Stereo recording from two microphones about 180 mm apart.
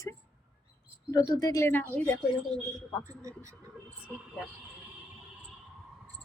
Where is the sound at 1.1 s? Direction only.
20° left (ahead or behind).